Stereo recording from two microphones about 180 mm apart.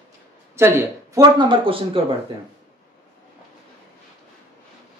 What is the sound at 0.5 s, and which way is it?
A man's voice, 15° right (ahead or behind).